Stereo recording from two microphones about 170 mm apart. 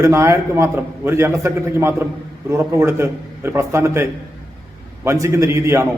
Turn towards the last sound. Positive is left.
turn(degrees=-15)  # may be behind; listen again after turning